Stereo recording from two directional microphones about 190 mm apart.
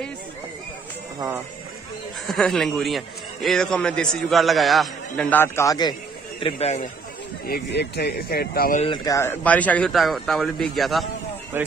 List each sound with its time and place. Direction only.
2.2 s a man's voice: centre (ahead or behind); by 5.9 s 20° left (ahead or behind)
6.4 s a man's voice: 35° left (ahead or behind)
7.4 s speech: 55° left (ahead or behind)
8.8 s a man's voice: 25° left (ahead or behind); by 11.1 s centre (ahead or behind)
11.5 s speech: 10° right (ahead or behind)